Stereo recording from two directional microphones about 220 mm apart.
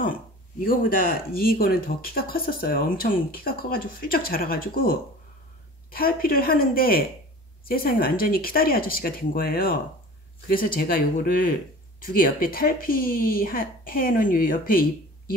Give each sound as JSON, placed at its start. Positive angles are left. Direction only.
{"t": 0.7, "sound": "speech", "side_deg": 40}